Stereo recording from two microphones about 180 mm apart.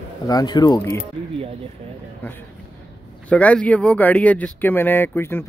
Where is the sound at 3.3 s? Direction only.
5° left (ahead or behind).